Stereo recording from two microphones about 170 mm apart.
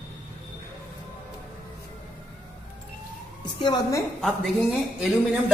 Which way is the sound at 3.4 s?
25° left (ahead or behind).